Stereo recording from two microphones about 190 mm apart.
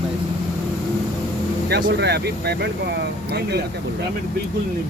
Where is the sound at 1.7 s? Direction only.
60° right (ahead or behind).